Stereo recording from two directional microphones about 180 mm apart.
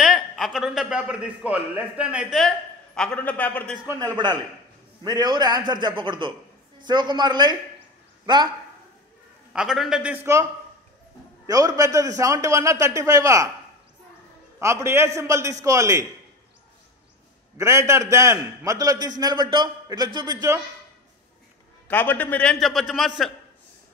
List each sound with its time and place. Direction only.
0.0 s a man's voice: centre (ahead or behind)
3.8 s a man's voice: 15° right (ahead or behind)
9.5 s a man's voice: 5° right (ahead or behind)
11.4 s a man's voice: 20° right (ahead or behind)
14.6 s a man's voice: 15° right (ahead or behind)
17.6 s a man's voice: 15° right (ahead or behind)
21.8 s a man's voice: 10° left (ahead or behind)